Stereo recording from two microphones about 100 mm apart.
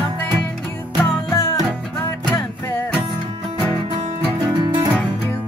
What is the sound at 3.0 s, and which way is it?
Music, 55° right (ahead or behind).